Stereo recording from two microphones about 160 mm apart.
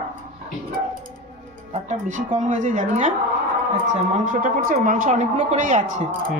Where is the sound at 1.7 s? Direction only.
50° right (ahead or behind).